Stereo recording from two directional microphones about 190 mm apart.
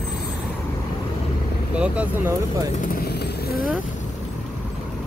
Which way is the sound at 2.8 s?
55° left (ahead or behind).